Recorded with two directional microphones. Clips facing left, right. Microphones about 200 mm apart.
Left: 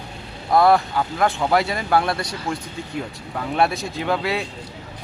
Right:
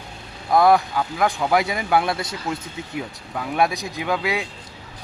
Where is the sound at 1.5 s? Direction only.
15° right (ahead or behind).